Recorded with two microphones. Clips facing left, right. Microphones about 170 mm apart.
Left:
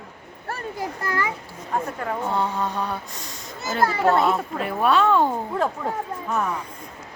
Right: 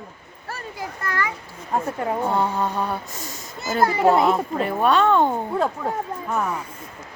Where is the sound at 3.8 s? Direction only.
15° right (ahead or behind).